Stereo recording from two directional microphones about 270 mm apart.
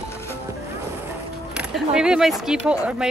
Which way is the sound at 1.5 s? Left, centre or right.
Centre.